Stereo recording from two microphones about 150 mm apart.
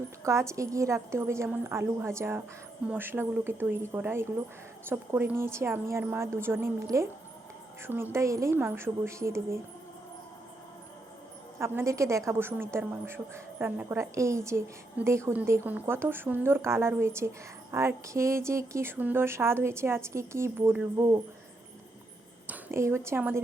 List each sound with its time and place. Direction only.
0.3 s a woman's voice: 20° right (ahead or behind)
11.6 s a woman's voice: 15° right (ahead or behind)
22.4 s a woman's voice: 15° right (ahead or behind)